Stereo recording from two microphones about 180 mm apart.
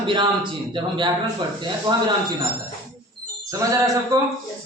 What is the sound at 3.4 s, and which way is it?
Speech, 20° right (ahead or behind).